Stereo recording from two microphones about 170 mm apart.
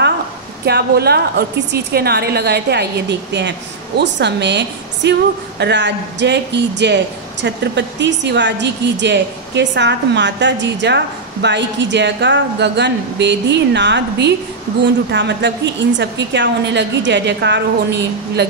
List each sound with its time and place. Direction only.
0.7 s a woman's voice: 70° right (ahead or behind)